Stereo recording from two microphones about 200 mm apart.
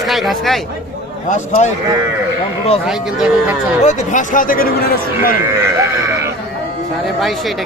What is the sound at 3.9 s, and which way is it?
A man's voice, 35° left (ahead or behind).